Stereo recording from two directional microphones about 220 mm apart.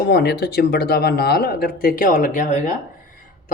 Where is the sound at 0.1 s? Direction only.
50° left (ahead or behind).